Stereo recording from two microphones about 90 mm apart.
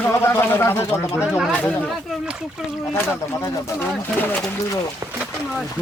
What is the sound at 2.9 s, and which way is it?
Speech, 25° left (ahead or behind).